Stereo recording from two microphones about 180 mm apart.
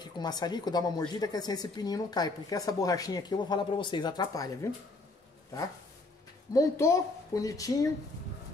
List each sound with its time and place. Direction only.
0.0 s speech: 25° left (ahead or behind)
6.5 s speech: 15° left (ahead or behind)